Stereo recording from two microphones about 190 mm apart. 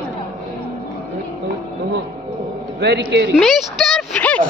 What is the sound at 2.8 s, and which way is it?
Speech, 65° right (ahead or behind).